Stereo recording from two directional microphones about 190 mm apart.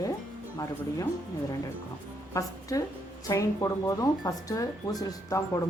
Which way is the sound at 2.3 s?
15° left (ahead or behind).